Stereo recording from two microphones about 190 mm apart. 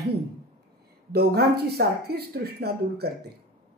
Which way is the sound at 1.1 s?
55° right (ahead or behind).